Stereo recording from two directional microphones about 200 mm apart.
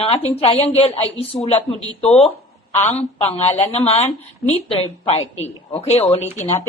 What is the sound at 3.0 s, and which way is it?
A woman's voice, 30° left (ahead or behind).